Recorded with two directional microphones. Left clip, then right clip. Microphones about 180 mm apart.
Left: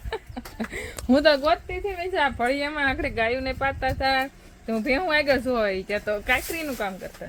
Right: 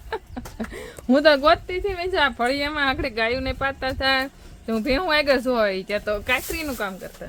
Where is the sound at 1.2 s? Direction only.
45° right (ahead or behind).